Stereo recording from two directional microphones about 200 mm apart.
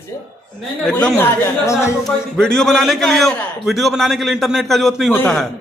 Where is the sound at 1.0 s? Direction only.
10° left (ahead or behind).